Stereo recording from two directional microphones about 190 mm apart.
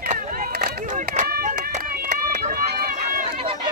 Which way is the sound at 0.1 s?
40° right (ahead or behind).